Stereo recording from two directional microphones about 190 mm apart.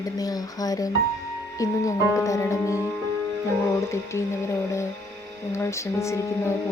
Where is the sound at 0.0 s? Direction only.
20° left (ahead or behind).